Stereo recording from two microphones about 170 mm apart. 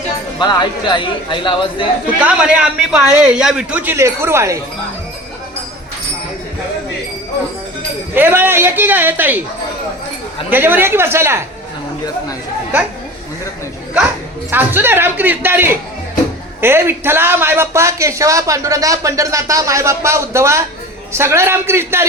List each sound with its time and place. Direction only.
0.3 s speech: 25° left (ahead or behind)
2.1 s a man's voice: 5° right (ahead or behind)
8.1 s a man's voice: 10° right (ahead or behind)
10.5 s a man's voice: 10° right (ahead or behind)
14.5 s a man's voice: 10° right (ahead or behind)